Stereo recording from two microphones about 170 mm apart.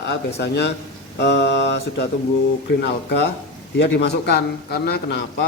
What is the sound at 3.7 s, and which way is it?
Speech, 90° left.